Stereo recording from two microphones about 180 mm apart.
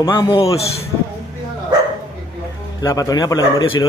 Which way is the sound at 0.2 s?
25° left (ahead or behind).